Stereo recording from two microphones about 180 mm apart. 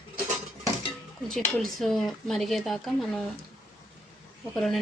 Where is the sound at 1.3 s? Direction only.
Centre (ahead or behind).